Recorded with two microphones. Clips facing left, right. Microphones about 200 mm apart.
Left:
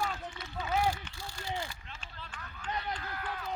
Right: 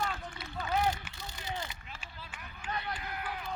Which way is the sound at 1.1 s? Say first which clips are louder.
Left 2 dB; 20° right (ahead or behind).